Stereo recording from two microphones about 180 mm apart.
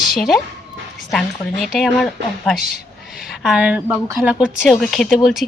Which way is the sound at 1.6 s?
Centre (ahead or behind).